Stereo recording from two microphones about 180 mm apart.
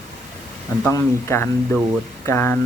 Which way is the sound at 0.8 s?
15° left (ahead or behind).